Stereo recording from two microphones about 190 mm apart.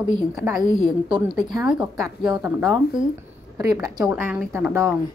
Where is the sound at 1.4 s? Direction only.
20° right (ahead or behind).